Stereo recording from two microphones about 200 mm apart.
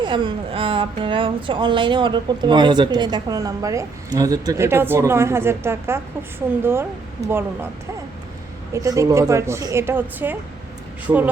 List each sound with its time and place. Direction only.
0.0 s speech: 25° right (ahead or behind)
8.7 s speech: 15° right (ahead or behind)